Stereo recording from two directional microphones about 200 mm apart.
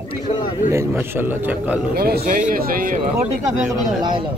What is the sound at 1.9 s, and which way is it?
Speech, 50° right (ahead or behind).